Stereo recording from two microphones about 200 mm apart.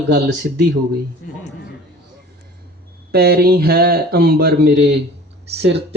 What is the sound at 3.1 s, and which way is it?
Speech, 50° right (ahead or behind).